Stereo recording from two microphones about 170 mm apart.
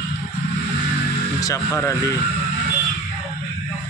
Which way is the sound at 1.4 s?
15° left (ahead or behind).